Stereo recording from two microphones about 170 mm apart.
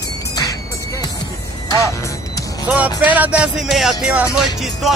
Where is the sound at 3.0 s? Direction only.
10° right (ahead or behind).